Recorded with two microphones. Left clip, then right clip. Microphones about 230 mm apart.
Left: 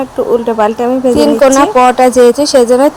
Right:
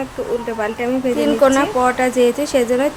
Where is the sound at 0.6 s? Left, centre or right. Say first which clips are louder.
Left 10 dB; left.